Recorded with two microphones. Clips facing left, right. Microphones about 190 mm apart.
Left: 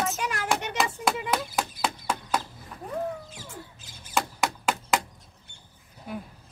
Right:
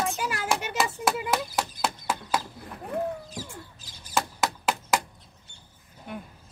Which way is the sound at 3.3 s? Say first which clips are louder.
Right 3 dB; 35° right (ahead or behind).